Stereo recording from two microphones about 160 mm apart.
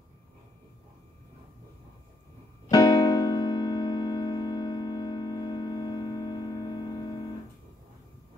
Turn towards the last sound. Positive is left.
turn(degrees=25)  # may be behind; listen again after turning